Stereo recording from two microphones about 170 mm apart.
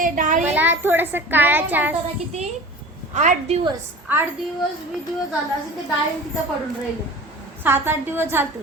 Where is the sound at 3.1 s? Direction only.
45° right (ahead or behind).